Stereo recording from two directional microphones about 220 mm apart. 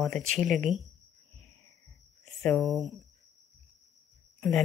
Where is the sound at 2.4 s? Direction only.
Centre (ahead or behind).